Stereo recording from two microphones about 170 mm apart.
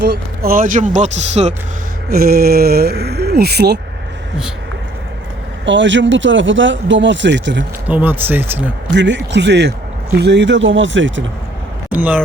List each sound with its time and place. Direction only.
0.0 s speech: 70° right (ahead or behind); by 1.5 s 40° right (ahead or behind)
2.0 s speech: 60° right (ahead or behind)
5.6 s speech: 90° right
7.9 s speech: 10° right (ahead or behind)
8.9 s speech: 90° right
11.9 s speech: 10° right (ahead or behind)